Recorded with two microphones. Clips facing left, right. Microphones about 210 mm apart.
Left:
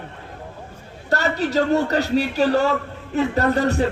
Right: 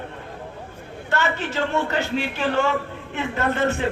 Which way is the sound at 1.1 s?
40° left (ahead or behind).